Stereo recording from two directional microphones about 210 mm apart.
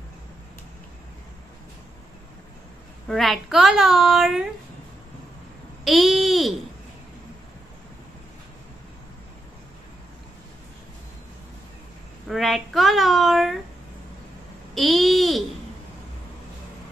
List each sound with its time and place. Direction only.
3.1 s a child's voice: centre (ahead or behind)
5.9 s a child's voice: centre (ahead or behind)
12.3 s a child's voice: centre (ahead or behind)
14.7 s a child's voice: centre (ahead or behind)